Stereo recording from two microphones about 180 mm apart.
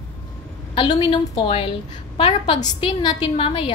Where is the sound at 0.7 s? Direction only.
30° left (ahead or behind).